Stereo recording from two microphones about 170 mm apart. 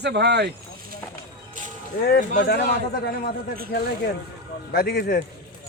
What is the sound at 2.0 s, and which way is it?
Speech, 65° left (ahead or behind).